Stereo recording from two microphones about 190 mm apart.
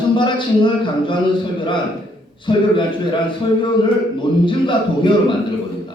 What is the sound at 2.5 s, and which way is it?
Speech, 25° left (ahead or behind).